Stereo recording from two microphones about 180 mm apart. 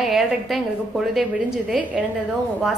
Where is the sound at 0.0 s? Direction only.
Centre (ahead or behind).